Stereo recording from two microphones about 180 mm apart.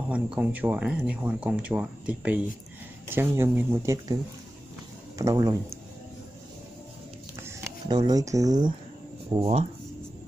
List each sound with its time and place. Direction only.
0.1 s speech: 5° right (ahead or behind)
5.2 s speech: 20° right (ahead or behind)
7.4 s speech: 20° right (ahead or behind)
9.4 s speech: 35° right (ahead or behind)